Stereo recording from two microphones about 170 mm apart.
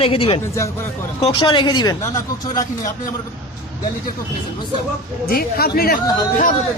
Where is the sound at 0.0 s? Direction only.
30° left (ahead or behind).